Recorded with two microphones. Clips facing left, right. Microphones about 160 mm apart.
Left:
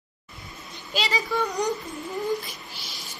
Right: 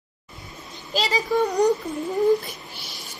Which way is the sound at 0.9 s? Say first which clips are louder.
Right 4 dB; 40° right (ahead or behind).